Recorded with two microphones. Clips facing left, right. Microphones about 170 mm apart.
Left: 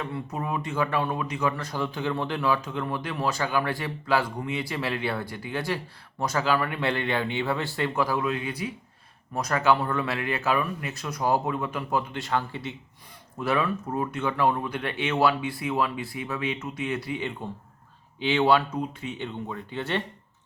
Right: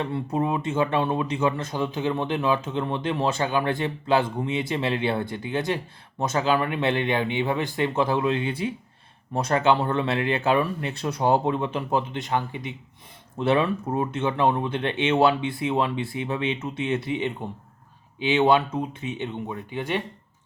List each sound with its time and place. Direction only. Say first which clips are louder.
0.0 s speech: right 6 dB; 30° right (ahead or behind); by 20.0 s 15° right (ahead or behind)